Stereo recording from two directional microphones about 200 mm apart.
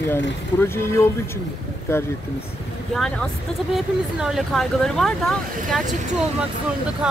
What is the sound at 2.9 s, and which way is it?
Speech, 5° left (ahead or behind).